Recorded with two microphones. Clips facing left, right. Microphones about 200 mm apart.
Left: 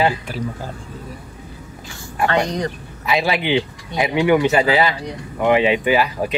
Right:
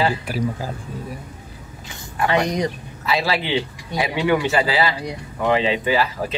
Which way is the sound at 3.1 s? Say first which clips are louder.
Left 3 dB; 20° left (ahead or behind).